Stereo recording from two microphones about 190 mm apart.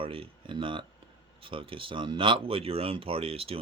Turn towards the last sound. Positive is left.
turn(degrees=-30)  # may be behind; listen again after turning